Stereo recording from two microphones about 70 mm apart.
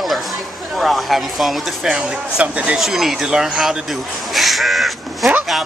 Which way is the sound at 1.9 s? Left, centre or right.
Centre.